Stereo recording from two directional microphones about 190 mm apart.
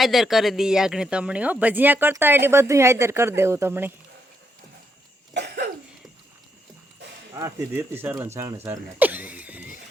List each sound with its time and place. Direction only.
0.0 s speech: centre (ahead or behind)
5.3 s cough: 60° right (ahead or behind)
7.3 s speech: 15° right (ahead or behind)
9.0 s cough: 10° right (ahead or behind)